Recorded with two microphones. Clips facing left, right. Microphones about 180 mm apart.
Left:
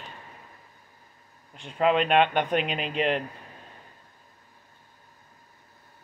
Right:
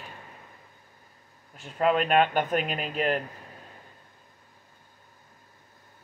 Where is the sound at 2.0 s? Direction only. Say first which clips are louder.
Left 1 dB; 45° right (ahead or behind).